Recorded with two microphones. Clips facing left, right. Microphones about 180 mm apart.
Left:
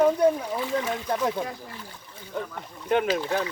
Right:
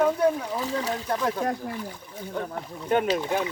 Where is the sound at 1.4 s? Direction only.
60° right (ahead or behind).